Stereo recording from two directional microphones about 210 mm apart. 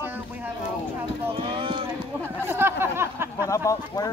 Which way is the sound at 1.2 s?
25° right (ahead or behind).